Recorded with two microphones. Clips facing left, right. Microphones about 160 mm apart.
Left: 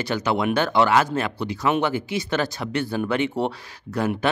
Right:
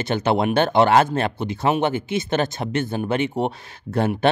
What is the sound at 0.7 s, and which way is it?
Speech, 50° right (ahead or behind).